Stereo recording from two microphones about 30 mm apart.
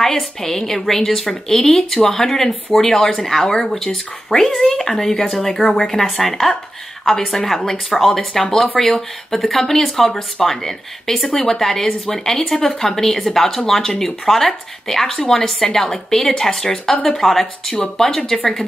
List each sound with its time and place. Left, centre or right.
0.0 s a woman's voice: centre
5.8 s a woman's voice: centre
8.2 s a woman's voice: centre
16.9 s speech: left
17.2 s a woman's voice: centre